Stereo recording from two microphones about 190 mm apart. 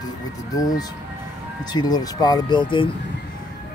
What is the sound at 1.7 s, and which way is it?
Speech, 20° left (ahead or behind).